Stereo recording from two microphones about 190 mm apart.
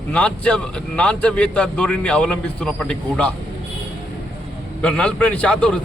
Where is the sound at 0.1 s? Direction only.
5° left (ahead or behind).